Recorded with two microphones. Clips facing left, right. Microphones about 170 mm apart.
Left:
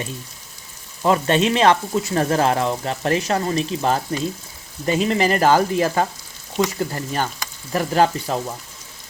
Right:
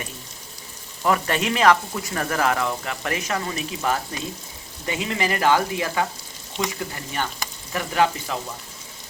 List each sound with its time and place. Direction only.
1.0 s speech: 25° left (ahead or behind)